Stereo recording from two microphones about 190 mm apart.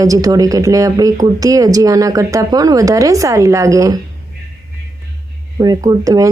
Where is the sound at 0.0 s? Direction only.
20° right (ahead or behind).